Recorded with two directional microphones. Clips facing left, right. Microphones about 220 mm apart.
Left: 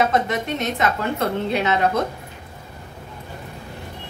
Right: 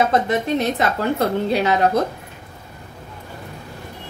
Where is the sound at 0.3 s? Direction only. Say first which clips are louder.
Right 4 dB; 35° right (ahead or behind).